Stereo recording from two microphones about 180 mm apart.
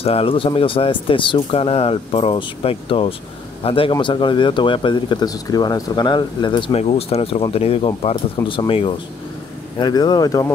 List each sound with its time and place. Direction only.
0.0 s speech: 30° left (ahead or behind)